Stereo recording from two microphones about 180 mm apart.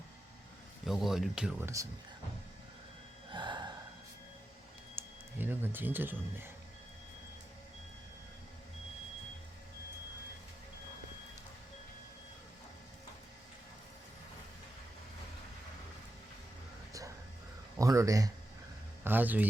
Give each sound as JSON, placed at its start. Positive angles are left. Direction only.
{"t": 0.9, "sound": "speech", "side_deg": 0}
{"t": 3.3, "sound": "gasp", "side_deg": -25}
{"t": 5.0, "sound": "a sound", "side_deg": -10}
{"t": 5.4, "sound": "speech", "side_deg": -10}
{"t": 17.7, "sound": "speech", "side_deg": -20}